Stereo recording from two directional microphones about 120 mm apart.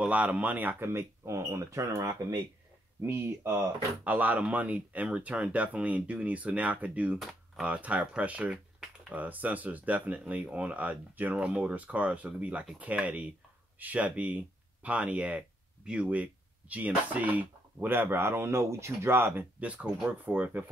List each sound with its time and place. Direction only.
0.0 s speech: 10° right (ahead or behind)